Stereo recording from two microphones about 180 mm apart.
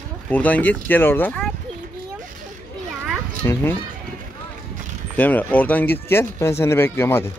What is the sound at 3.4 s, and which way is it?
Speech, 15° left (ahead or behind).